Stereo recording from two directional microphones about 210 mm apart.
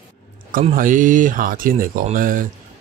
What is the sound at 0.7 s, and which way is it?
Speech, 40° right (ahead or behind).